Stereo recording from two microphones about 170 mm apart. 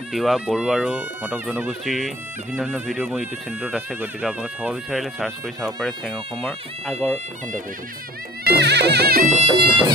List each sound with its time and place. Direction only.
0.1 s speech: centre (ahead or behind)
8.5 s music: 80° right
9.4 s music: 30° right (ahead or behind)